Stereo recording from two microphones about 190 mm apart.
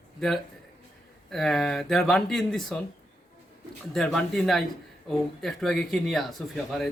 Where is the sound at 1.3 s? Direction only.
Centre (ahead or behind).